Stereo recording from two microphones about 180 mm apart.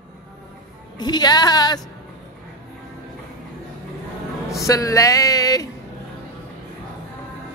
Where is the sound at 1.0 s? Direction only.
25° left (ahead or behind).